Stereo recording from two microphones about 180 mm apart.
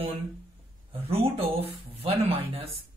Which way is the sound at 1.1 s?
35° right (ahead or behind).